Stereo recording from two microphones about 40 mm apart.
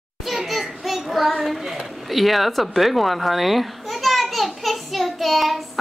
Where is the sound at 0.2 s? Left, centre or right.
Centre.